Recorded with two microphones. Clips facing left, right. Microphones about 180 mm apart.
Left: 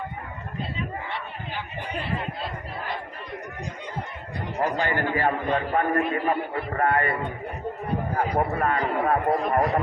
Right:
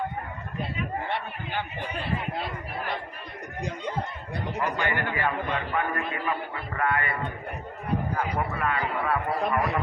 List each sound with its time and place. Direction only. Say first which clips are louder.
1.0 s a sound: right 2 dB; 55° right (ahead or behind)
4.9 s a man's voice: left 4 dB; 40° left (ahead or behind)
8.1 s speech: left 4 dB; 40° left (ahead or behind)